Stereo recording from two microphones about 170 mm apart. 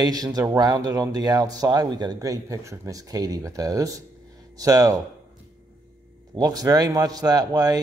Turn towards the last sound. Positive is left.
turn(degrees=-20)  # may be behind; listen again after turning